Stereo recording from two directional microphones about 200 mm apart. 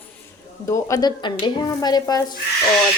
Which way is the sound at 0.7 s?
15° left (ahead or behind).